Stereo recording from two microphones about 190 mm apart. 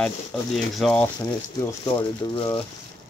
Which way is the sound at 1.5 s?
25° left (ahead or behind).